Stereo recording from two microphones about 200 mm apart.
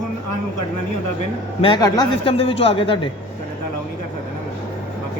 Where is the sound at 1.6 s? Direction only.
20° left (ahead or behind).